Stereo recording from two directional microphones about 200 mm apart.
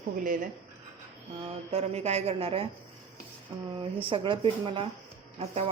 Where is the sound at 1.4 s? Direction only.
30° right (ahead or behind).